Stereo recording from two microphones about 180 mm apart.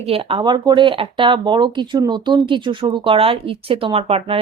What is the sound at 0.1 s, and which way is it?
Speech, 30° right (ahead or behind).